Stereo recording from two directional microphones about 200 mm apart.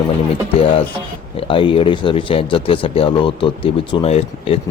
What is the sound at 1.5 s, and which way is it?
Speech, 25° left (ahead or behind).